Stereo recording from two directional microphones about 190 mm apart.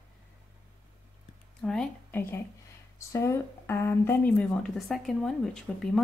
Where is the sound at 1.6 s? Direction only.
5° left (ahead or behind).